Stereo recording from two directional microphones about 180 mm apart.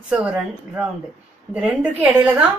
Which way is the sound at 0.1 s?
5° right (ahead or behind).